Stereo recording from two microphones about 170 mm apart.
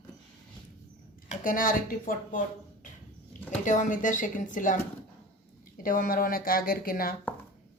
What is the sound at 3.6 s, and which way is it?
Speech, 50° left (ahead or behind).